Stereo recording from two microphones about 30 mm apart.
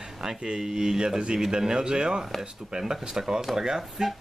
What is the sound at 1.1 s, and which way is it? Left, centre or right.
Speech, right.